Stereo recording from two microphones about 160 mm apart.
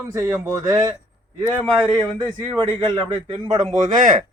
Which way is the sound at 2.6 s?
35° right (ahead or behind).